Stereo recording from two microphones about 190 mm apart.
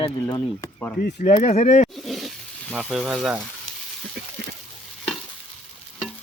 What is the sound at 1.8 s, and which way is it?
Wild animals, centre (ahead or behind).